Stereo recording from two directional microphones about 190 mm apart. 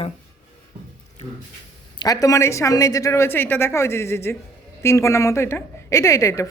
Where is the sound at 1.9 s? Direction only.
20° left (ahead or behind).